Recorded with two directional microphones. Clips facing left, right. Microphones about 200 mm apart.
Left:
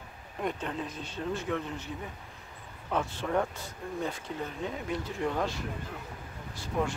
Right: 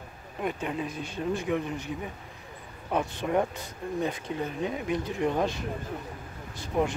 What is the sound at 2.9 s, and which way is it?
Speech, 15° right (ahead or behind).